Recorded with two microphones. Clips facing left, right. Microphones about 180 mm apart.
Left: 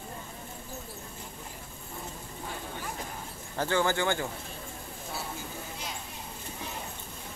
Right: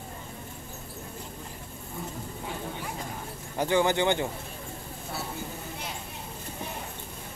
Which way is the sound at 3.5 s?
15° right (ahead or behind).